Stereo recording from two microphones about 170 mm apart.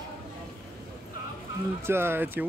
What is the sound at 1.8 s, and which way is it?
Speech, 15° right (ahead or behind).